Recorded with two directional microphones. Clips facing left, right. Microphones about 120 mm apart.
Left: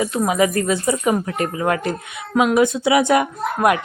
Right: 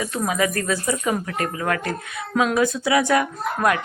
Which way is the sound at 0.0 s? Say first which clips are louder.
Left 5 dB; 20° left (ahead or behind).